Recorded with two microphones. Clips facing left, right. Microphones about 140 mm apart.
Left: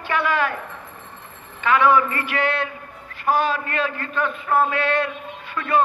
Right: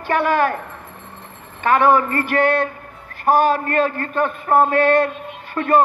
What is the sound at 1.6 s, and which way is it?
Speech, 45° right (ahead or behind).